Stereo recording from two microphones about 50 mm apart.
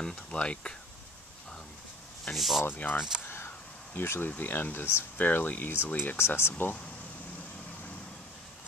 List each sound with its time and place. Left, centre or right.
0.0 s speech: left
2.3 s speech: centre
2.6 s speech: left
3.3 s a sound: left
3.9 s speech: left
5.1 s speech: left
6.1 s speech: left